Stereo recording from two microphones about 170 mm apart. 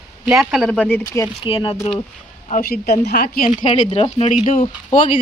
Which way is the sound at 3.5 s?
40° left (ahead or behind).